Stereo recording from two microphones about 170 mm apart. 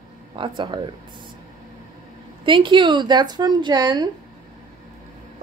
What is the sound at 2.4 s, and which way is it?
A woman's voice, 30° right (ahead or behind).